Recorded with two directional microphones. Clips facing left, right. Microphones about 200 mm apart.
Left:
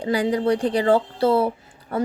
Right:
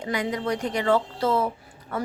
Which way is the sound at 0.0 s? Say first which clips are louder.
Left 6 dB; 30° left (ahead or behind).